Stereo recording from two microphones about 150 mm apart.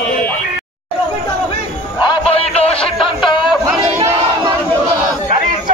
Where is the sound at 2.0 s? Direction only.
35° left (ahead or behind).